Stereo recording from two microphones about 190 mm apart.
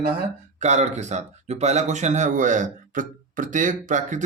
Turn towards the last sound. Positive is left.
turn(degrees=-40)  # may be behind; listen again after turning